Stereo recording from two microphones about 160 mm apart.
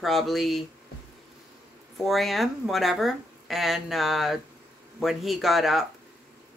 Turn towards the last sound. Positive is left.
turn(degrees=0)  # may be behind; listen again after turning